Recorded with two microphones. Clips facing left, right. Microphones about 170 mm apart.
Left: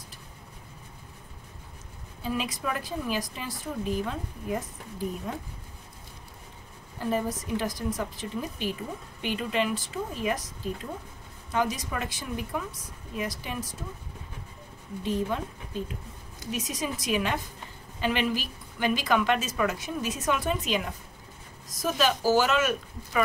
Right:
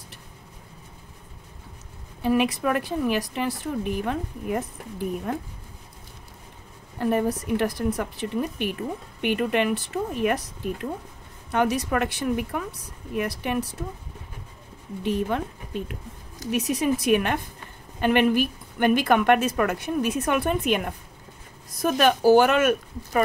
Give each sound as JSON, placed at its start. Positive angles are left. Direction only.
{"t": 2.2, "sound": "speech", "side_deg": -65}
{"t": 7.0, "sound": "speech", "side_deg": -60}
{"t": 15.0, "sound": "speech", "side_deg": -65}